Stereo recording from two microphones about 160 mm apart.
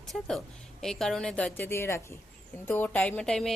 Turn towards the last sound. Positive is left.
turn(degrees=5)  # may be behind; listen again after turning